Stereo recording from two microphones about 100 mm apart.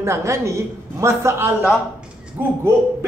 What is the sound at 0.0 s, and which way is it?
Speech, 30° right (ahead or behind).